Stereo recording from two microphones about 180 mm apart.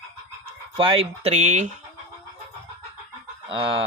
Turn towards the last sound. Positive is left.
turn(degrees=-30)  # may be behind; listen again after turning